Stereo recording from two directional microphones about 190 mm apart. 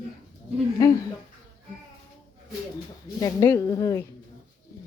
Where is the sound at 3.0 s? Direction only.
20° left (ahead or behind).